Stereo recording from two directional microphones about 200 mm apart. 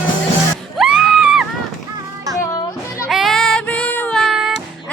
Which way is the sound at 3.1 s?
Centre (ahead or behind).